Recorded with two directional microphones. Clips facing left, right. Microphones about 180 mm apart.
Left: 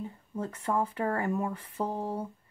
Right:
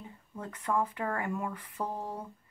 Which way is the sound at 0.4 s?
30° left (ahead or behind).